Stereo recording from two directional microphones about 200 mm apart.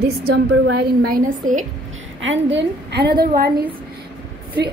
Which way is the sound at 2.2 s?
65° right (ahead or behind).